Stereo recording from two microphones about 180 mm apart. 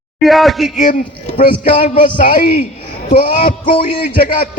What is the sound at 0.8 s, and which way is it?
A man's voice, 45° left (ahead or behind).